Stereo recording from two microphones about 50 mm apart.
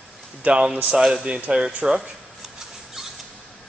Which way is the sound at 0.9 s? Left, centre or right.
Centre.